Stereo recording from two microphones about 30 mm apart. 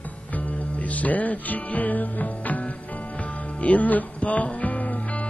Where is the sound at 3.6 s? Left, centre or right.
Left.